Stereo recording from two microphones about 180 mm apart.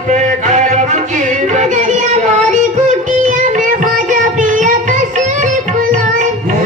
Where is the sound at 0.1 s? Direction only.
40° right (ahead or behind).